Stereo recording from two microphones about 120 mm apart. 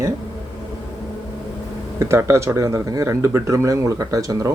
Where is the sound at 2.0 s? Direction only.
25° right (ahead or behind).